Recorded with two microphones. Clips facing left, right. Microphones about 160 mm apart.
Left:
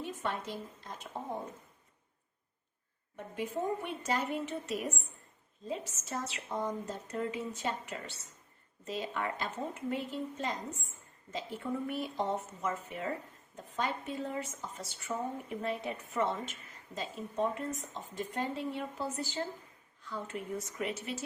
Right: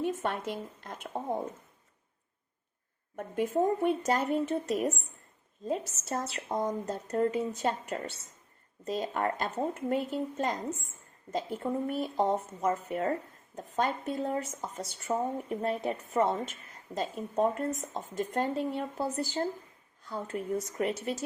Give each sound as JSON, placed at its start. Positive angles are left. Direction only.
{"t": 0.0, "sound": "a sound", "side_deg": -50}
{"t": 0.8, "sound": "speech", "side_deg": -55}
{"t": 3.2, "sound": "a woman's voice", "side_deg": -45}